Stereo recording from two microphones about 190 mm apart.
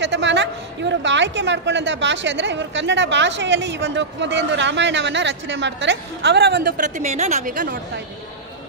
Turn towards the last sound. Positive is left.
turn(degrees=-45)  # may be behind; listen again after turning